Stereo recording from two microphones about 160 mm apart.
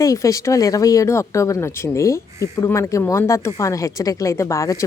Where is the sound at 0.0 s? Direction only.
20° left (ahead or behind).